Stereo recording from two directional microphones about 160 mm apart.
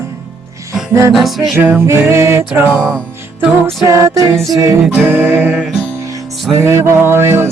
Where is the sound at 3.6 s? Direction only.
20° right (ahead or behind).